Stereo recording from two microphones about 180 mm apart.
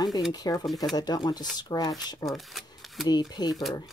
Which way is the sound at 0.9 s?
20° left (ahead or behind).